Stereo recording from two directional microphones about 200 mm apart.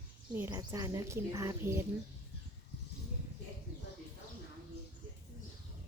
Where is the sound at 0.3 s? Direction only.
15° right (ahead or behind).